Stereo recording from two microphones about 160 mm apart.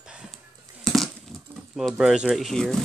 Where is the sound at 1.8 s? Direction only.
Centre (ahead or behind).